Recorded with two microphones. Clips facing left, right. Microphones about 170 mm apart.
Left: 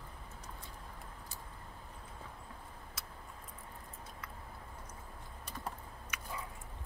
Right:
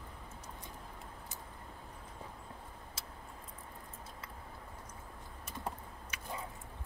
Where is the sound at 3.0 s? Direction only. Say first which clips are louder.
Even; 30° right (ahead or behind).